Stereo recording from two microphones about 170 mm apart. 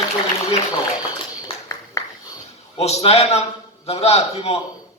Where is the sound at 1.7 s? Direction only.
15° left (ahead or behind).